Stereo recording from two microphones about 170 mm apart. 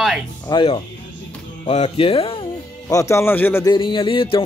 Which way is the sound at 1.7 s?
35° left (ahead or behind).